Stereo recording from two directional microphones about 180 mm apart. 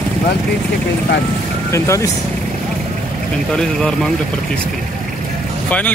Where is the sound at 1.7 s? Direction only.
15° left (ahead or behind).